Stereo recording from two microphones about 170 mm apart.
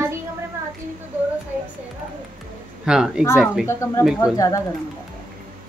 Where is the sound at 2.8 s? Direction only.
5° right (ahead or behind).